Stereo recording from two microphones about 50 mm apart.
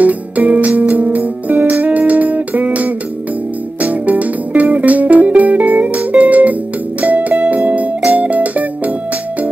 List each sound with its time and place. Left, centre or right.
0.0 s music: right